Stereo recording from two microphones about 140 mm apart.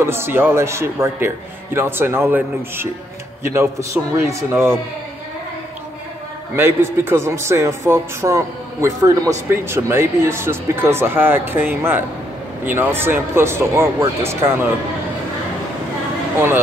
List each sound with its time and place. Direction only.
0.0 s a man's voice: 15° right (ahead or behind)
6.5 s a man's voice: 15° right (ahead or behind)
16.3 s a man's voice: 15° right (ahead or behind)